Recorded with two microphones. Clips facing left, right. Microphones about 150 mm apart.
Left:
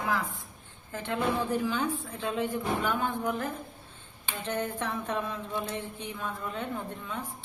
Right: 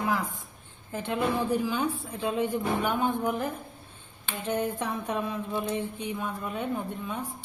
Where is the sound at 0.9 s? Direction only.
20° right (ahead or behind).